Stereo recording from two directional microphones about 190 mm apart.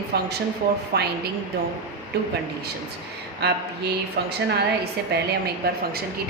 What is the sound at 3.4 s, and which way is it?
Speech, 60° right (ahead or behind).